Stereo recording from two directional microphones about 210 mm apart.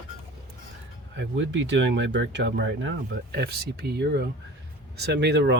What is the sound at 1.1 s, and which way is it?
Speech, 60° right (ahead or behind).